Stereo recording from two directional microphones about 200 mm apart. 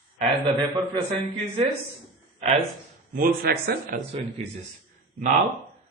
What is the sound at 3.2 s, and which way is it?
A man's voice, 50° right (ahead or behind).